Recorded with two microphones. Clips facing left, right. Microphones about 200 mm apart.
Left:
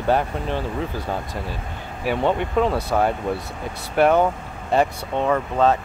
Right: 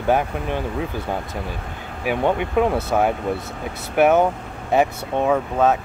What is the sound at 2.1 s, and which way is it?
Speech, 15° right (ahead or behind).